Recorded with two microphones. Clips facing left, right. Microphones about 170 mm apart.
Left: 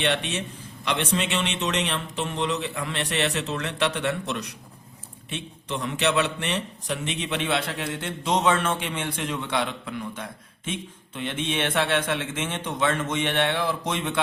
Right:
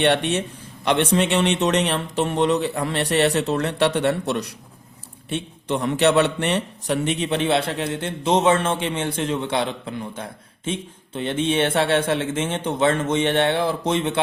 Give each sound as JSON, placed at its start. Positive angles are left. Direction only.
{"t": 0.0, "sound": "a man's voice", "side_deg": -50}